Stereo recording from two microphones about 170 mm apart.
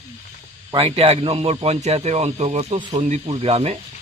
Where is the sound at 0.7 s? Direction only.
35° right (ahead or behind).